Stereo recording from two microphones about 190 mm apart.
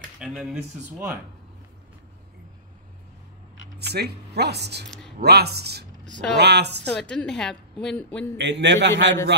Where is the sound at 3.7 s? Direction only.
60° right (ahead or behind).